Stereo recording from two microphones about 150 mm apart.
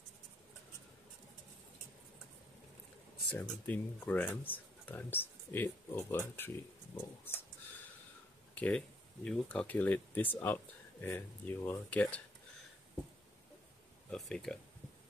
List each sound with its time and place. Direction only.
3.3 s speech: 10° left (ahead or behind)
8.5 s speech: 10° left (ahead or behind)
14.1 s speech: 5° left (ahead or behind)